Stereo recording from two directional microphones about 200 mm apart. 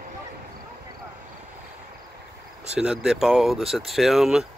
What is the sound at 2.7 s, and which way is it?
Speech, 5° right (ahead or behind).